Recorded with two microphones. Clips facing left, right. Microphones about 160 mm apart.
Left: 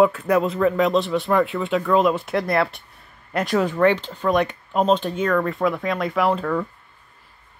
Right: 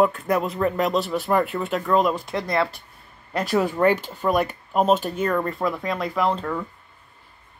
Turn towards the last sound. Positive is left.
turn(degrees=5)  # may be behind; listen again after turning